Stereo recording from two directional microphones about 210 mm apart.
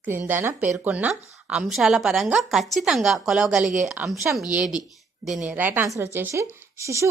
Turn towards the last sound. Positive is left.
turn(degrees=-15)  # may be behind; listen again after turning